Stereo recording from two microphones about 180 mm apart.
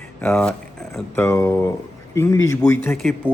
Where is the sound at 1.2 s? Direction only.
15° left (ahead or behind).